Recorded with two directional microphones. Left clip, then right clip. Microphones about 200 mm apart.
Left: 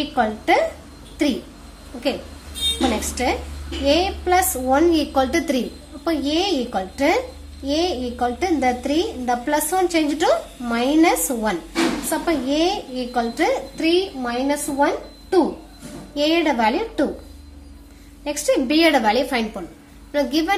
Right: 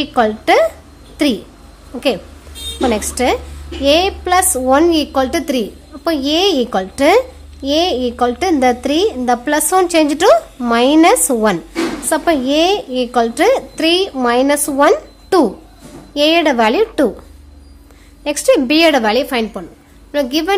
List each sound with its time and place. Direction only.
0.0 s a woman's voice: 35° right (ahead or behind)
3.0 s a woman's voice: 35° right (ahead or behind)
16.2 s a woman's voice: 35° right (ahead or behind)
18.2 s a woman's voice: 30° right (ahead or behind)